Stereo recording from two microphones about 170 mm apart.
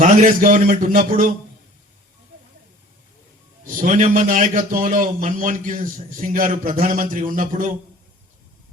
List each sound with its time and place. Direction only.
0.0 s a man's voice: 50° right (ahead or behind)
3.8 s a man's voice: 45° right (ahead or behind)